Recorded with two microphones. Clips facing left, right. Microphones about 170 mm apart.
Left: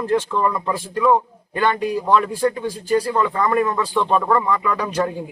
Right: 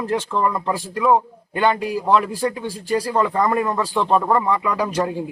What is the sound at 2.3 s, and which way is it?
A man's voice, 30° right (ahead or behind).